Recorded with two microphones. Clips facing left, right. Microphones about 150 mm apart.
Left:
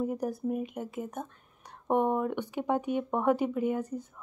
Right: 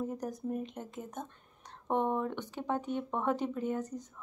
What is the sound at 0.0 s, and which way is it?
Speech, 10° left (ahead or behind).